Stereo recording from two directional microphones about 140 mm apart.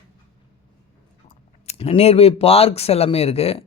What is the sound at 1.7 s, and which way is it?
A man's voice, 45° left (ahead or behind).